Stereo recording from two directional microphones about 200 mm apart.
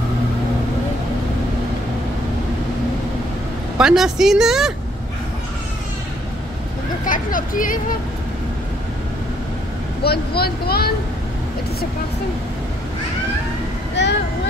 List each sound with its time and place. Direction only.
3.7 s speech: 5° right (ahead or behind)
7.1 s speech: 45° left (ahead or behind)
10.0 s speech: 50° left (ahead or behind)
14.0 s vehicle: 60° left (ahead or behind)